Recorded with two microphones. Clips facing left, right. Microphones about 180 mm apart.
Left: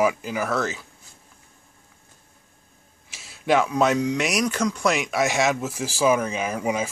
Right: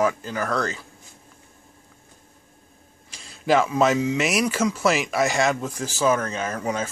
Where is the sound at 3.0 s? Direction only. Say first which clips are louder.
Right 1 dB; 5° left (ahead or behind).